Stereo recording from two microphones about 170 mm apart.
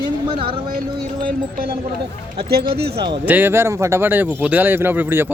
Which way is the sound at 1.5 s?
60° right (ahead or behind).